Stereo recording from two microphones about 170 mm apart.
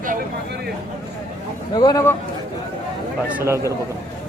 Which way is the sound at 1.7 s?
20° left (ahead or behind).